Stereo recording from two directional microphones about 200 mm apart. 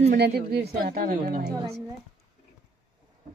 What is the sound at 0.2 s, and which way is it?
A woman's voice, 55° right (ahead or behind).